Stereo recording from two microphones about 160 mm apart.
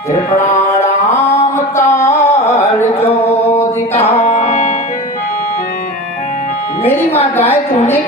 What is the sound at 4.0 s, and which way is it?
Music, 40° left (ahead or behind).